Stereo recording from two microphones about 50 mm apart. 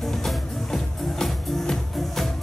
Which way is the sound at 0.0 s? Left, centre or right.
Centre.